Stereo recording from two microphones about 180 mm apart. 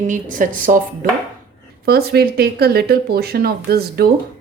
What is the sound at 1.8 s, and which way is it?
Speech, 60° right (ahead or behind).